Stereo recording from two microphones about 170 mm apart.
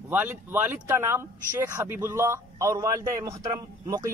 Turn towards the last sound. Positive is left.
turn(degrees=-20)  # may be behind; listen again after turning